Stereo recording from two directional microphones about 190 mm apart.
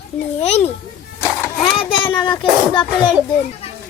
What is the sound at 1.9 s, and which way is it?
Speech, 25° left (ahead or behind).